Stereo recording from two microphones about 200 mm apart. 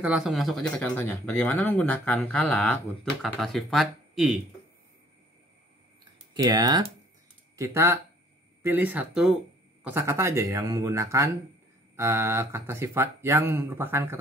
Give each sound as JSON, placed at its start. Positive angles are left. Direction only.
{"t": 0.0, "sound": "speech", "side_deg": 0}
{"t": 6.3, "sound": "speech", "side_deg": -20}